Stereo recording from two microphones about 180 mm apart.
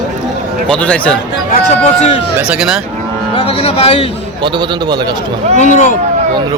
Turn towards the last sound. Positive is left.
turn(degrees=45)  # may be behind; listen again after turning